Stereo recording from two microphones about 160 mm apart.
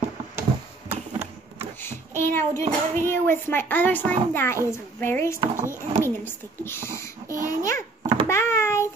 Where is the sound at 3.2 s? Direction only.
15° left (ahead or behind).